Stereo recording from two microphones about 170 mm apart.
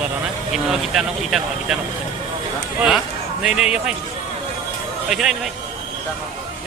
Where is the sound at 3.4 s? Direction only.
5° right (ahead or behind).